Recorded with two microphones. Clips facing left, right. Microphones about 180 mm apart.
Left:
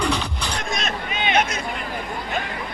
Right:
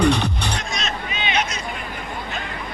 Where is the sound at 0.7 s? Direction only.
55° left (ahead or behind).